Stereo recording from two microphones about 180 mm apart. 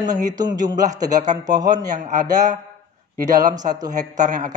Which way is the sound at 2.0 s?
45° right (ahead or behind).